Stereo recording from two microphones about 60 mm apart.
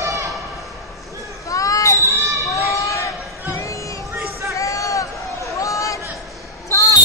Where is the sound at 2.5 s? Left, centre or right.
Left.